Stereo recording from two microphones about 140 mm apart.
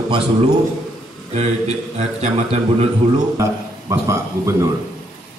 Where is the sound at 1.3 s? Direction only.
50° right (ahead or behind).